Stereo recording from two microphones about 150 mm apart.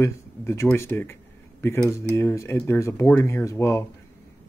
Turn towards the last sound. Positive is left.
turn(degrees=20)  # may be behind; listen again after turning